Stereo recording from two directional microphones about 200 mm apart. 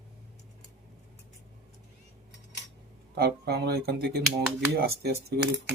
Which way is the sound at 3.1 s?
50° right (ahead or behind).